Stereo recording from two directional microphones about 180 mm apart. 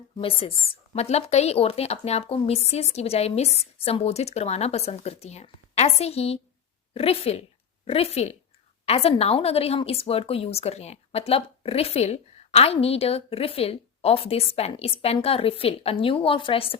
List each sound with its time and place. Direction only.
0.2 s a woman's voice: 30° left (ahead or behind)